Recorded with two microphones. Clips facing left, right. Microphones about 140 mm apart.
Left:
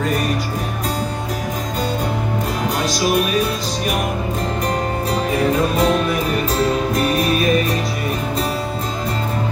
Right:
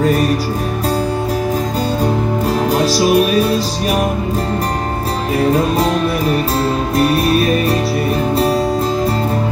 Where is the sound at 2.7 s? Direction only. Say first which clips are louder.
Right 6 dB; 35° right (ahead or behind).